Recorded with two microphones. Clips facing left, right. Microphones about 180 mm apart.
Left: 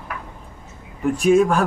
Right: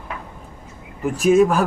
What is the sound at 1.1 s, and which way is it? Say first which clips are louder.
Speech: right 1 dB; centre (ahead or behind).